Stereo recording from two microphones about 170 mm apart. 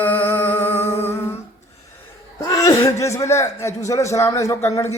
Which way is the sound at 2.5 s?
20° left (ahead or behind).